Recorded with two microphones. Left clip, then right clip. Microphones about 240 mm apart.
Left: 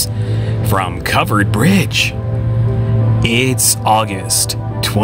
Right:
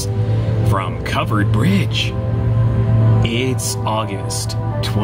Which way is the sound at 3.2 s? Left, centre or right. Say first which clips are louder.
Left 10 dB; left.